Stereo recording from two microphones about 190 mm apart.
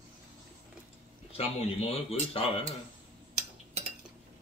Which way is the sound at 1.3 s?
30° left (ahead or behind).